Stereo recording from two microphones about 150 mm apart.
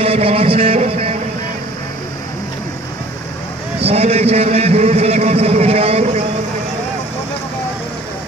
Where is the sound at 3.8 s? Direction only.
40° right (ahead or behind).